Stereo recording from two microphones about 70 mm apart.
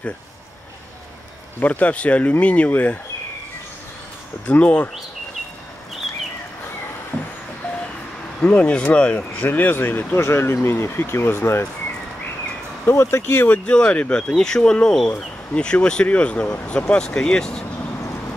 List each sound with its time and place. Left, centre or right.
1.6 s speech: left
4.5 s speech: centre
8.4 s speech: centre
9.4 s speech: left
12.8 s speech: left
13.5 s speech: centre